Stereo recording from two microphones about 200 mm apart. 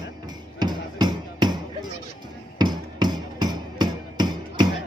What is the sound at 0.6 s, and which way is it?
Basketball bounce, 20° right (ahead or behind).